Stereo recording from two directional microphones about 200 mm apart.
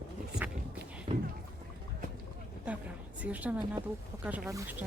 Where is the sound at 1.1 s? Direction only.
25° right (ahead or behind).